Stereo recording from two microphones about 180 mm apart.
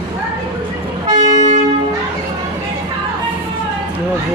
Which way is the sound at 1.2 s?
40° right (ahead or behind).